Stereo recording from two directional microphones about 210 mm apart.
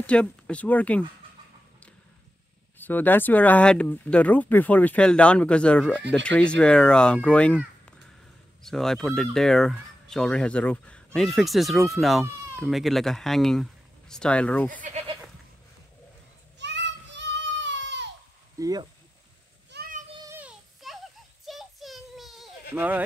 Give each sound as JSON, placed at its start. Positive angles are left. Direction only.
{"t": 0.0, "sound": "speech", "side_deg": 5}
{"t": 2.8, "sound": "speech", "side_deg": 10}
{"t": 16.5, "sound": "child singing", "side_deg": -60}
{"t": 18.6, "sound": "speech", "side_deg": -20}
{"t": 19.7, "sound": "child singing", "side_deg": -45}
{"t": 20.2, "sound": "child singing", "side_deg": -5}
{"t": 22.8, "sound": "speech", "side_deg": -10}